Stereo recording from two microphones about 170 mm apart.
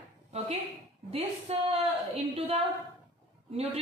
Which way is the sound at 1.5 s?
35° right (ahead or behind).